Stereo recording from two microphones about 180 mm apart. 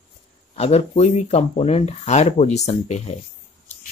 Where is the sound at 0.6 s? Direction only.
35° left (ahead or behind).